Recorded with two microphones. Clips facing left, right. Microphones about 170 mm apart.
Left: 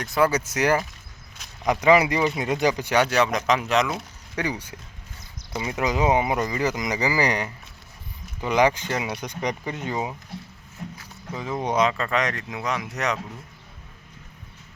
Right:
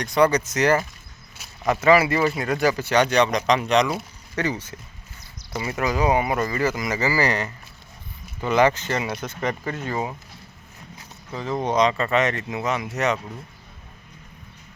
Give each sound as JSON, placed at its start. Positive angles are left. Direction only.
{"t": 0.0, "sound": "speech", "side_deg": 5}
{"t": 4.4, "sound": "speech", "side_deg": 10}
{"t": 11.3, "sound": "speech", "side_deg": 10}